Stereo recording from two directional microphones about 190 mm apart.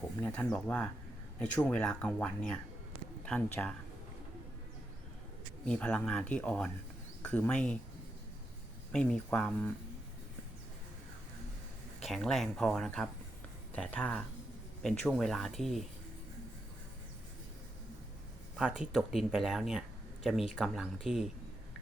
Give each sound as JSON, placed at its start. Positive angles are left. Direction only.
{"t": 0.2, "sound": "speech", "side_deg": 10}
{"t": 5.6, "sound": "speech", "side_deg": 5}
{"t": 8.9, "sound": "speech", "side_deg": 5}
{"t": 12.0, "sound": "speech", "side_deg": 0}
{"t": 18.5, "sound": "speech", "side_deg": -5}